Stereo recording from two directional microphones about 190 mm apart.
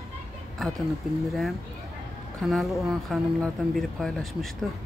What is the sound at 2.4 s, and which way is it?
Speech, centre (ahead or behind).